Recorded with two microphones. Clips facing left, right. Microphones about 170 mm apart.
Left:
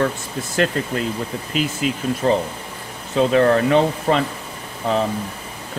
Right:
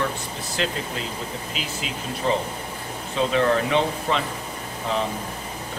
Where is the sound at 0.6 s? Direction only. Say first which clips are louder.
Left 8 dB; 50° left (ahead or behind).